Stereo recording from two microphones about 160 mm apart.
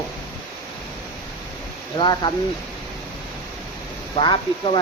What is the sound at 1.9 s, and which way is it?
Speech, 25° left (ahead or behind).